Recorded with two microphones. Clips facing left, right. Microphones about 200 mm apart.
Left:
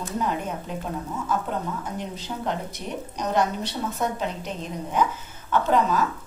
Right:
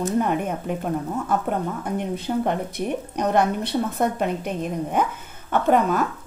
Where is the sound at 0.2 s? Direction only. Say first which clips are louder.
Right 4 dB; 60° right (ahead or behind).